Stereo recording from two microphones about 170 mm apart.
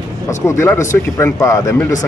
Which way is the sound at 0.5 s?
15° left (ahead or behind).